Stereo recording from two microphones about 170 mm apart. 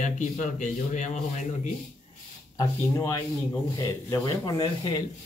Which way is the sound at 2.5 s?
20° left (ahead or behind).